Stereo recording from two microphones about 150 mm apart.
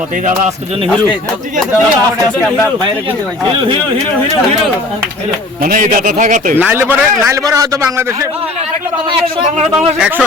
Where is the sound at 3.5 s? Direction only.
35° right (ahead or behind).